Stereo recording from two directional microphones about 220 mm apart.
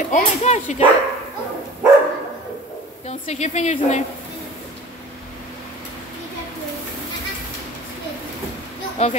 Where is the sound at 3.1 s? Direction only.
30° left (ahead or behind).